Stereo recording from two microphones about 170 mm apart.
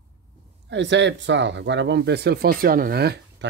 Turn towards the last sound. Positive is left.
turn(degrees=-70)  # may be behind; listen again after turning